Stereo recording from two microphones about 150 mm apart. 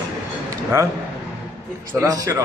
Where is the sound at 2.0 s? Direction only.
20° right (ahead or behind).